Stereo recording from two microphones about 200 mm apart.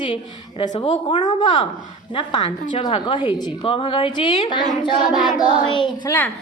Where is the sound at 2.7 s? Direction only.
25° left (ahead or behind).